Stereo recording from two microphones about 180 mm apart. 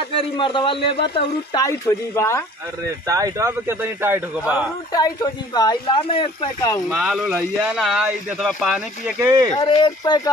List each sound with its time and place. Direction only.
0.1 s speech: 30° left (ahead or behind)
1.6 s speech: 15° left (ahead or behind)
3.1 s a man's voice: 20° right (ahead or behind)
4.9 s speech: 20° left (ahead or behind)
6.9 s speech: centre (ahead or behind)
9.6 s speech: 25° left (ahead or behind)